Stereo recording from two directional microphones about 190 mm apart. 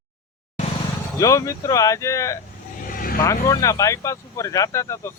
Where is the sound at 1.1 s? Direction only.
15° left (ahead or behind).